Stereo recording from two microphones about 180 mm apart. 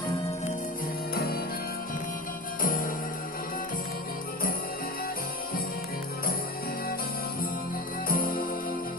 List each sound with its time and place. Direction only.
1.1 s music: 55° left (ahead or behind)
2.6 s music: 50° left (ahead or behind)
8.0 s music: 55° left (ahead or behind)